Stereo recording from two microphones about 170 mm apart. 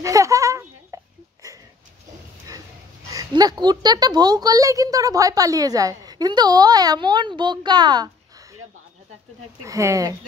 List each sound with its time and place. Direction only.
0.0 s a sound: 20° right (ahead or behind)
3.1 s a woman's voice: 20° right (ahead or behind)
9.6 s a woman's voice: 15° right (ahead or behind)